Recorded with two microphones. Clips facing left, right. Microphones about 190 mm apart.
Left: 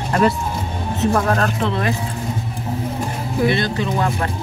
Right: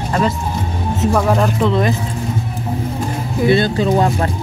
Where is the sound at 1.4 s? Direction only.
20° right (ahead or behind).